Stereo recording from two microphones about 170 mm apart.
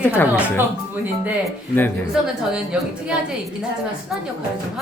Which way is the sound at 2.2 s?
5° right (ahead or behind).